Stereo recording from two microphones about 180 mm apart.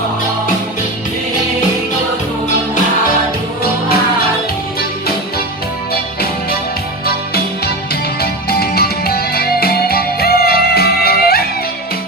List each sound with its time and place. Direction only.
7.0 s music: 60° left (ahead or behind)